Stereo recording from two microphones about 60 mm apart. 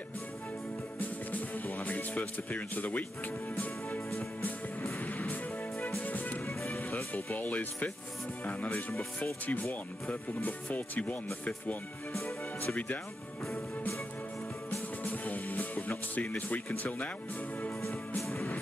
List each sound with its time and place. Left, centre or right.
0.9 s music: left
6.4 s music: left
7.3 s speech: left
12.7 s speech: left
15.0 s speech: left